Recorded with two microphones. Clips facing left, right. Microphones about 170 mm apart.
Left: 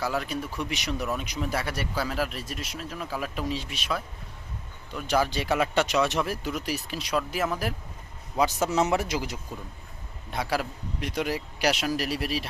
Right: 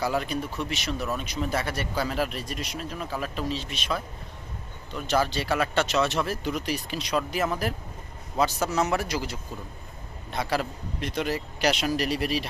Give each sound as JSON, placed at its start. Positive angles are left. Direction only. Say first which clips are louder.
{"t": 0.0, "sound": "speech", "louder": "right 2 dB", "side_deg": 0}
{"t": 0.5, "sound": "speech", "louder": "even", "side_deg": 15}
{"t": 8.4, "sound": "a man's voice", "louder": "left 1 dB", "side_deg": 20}